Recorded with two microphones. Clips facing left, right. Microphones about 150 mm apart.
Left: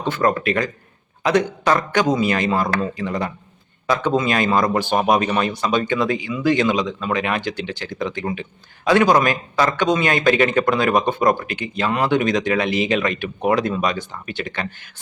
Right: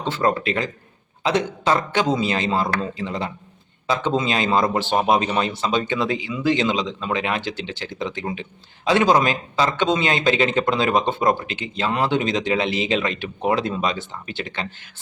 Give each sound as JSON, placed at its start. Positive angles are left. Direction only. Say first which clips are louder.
{"t": 0.1, "sound": "speech", "louder": "left 2 dB", "side_deg": -25}